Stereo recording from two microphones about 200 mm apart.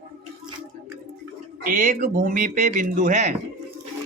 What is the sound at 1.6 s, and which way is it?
A man's voice, 40° right (ahead or behind).